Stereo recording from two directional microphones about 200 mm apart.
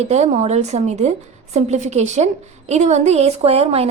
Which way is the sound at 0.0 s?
30° right (ahead or behind).